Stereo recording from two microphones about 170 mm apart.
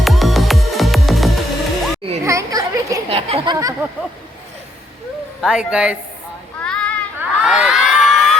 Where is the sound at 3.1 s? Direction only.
35° right (ahead or behind).